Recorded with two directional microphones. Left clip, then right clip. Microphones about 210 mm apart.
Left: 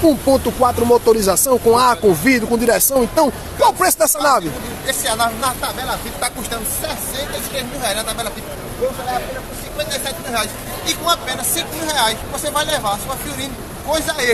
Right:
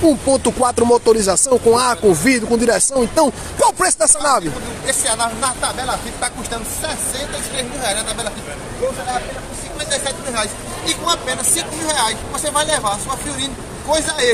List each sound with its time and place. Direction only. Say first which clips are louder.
0.0 s speech: left 1 dB; 5° right (ahead or behind)
0.4 s speech: even; 20° right (ahead or behind)
1.0 s speech: even; 5° right (ahead or behind); by 8.3 s 15° left (ahead or behind)
9.8 s speech: even; 10° left (ahead or behind)
10.3 s speech: left 1 dB; 25° left (ahead or behind)
11.1 s speech: left 1 dB; 10° left (ahead or behind)